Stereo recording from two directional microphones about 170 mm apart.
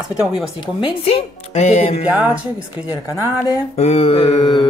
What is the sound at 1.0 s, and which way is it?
Speech, 40° left (ahead or behind).